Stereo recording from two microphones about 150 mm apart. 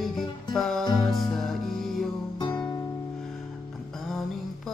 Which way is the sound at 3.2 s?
Centre (ahead or behind).